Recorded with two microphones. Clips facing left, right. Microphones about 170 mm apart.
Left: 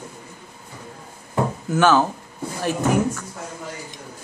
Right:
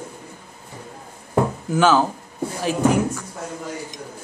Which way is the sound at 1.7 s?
10° right (ahead or behind).